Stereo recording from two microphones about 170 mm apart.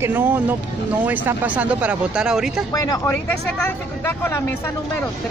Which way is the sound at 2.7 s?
20° left (ahead or behind).